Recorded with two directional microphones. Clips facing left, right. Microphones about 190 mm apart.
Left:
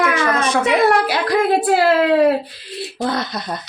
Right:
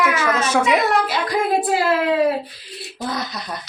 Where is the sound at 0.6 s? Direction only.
65° left (ahead or behind).